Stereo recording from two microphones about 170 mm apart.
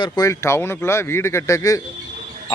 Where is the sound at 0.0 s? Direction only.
20° left (ahead or behind).